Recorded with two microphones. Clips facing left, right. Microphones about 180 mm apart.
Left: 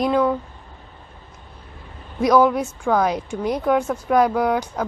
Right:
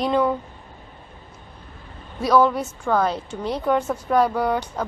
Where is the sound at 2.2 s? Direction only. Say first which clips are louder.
Left 2 dB; 10° left (ahead or behind).